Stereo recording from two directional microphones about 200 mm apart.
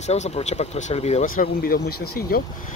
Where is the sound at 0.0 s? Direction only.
35° left (ahead or behind).